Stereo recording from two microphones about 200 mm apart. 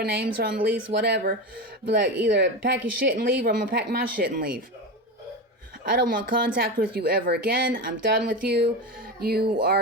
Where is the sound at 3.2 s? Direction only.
50° right (ahead or behind).